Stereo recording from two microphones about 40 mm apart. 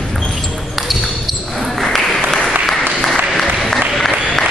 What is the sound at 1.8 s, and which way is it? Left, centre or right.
Applause, centre.